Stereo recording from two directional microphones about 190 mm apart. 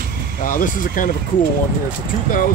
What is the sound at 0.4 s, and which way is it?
Speech, 45° left (ahead or behind).